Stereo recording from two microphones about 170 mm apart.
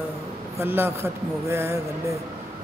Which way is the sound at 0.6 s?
15° right (ahead or behind).